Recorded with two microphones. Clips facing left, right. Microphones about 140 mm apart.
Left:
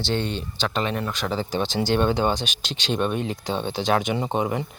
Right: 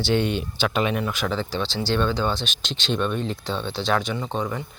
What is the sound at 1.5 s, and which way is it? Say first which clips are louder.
Speech: left 2 dB; 45° left (ahead or behind).